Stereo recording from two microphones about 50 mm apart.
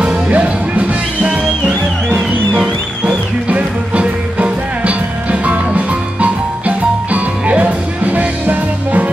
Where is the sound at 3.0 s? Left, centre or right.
Right.